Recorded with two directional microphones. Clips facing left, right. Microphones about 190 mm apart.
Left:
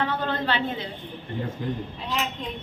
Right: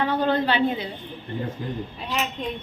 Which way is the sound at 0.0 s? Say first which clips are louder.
Right 5 dB; 15° right (ahead or behind).